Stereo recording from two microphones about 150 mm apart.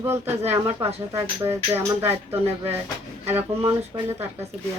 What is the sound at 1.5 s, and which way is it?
Music, 15° right (ahead or behind).